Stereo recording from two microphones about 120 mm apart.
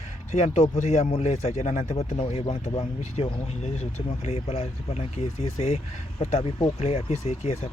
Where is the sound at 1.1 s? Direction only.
65° left (ahead or behind).